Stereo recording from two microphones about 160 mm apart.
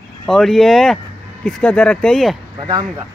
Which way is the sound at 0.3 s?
Centre (ahead or behind).